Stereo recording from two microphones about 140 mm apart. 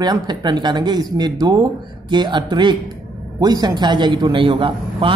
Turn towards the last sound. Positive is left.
turn(degrees=-40)  # may be behind; listen again after turning